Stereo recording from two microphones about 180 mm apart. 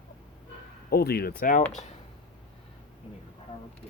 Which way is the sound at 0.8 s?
60° left (ahead or behind).